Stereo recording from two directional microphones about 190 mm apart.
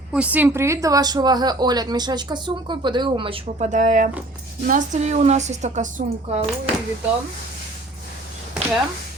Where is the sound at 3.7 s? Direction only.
40° right (ahead or behind).